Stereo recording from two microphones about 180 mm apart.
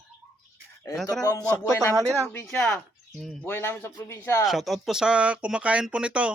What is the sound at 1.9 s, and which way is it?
Speech, 15° right (ahead or behind).